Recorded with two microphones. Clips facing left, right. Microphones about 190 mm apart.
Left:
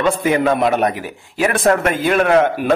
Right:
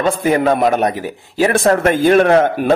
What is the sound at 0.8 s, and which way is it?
A man's voice, 30° right (ahead or behind).